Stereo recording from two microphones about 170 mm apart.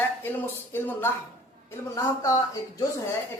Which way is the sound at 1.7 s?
15° left (ahead or behind).